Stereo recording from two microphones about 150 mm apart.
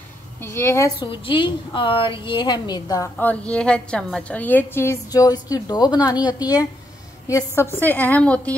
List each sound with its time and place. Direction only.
0.4 s a woman's voice: 15° left (ahead or behind)
1.2 s a woman's voice: 35° left (ahead or behind)
3.2 s a woman's voice: 10° left (ahead or behind)